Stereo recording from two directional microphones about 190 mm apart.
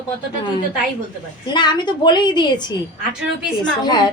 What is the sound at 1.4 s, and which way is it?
A woman's voice, 25° left (ahead or behind).